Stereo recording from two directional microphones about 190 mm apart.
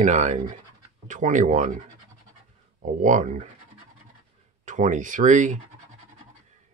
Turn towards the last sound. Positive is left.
turn(degrees=-40)  # may be behind; listen again after turning